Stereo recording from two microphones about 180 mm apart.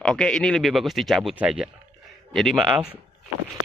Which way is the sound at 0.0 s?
5° left (ahead or behind).